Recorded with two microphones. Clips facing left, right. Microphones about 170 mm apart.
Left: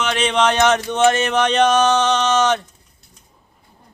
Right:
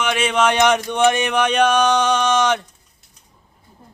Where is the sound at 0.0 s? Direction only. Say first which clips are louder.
Even; 10° right (ahead or behind).